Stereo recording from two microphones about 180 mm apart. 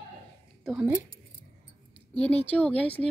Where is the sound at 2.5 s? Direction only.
10° left (ahead or behind).